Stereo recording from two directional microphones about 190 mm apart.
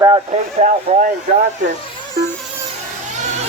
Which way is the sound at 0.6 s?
35° right (ahead or behind).